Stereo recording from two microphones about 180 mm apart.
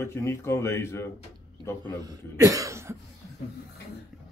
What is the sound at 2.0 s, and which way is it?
Cough, 20° right (ahead or behind).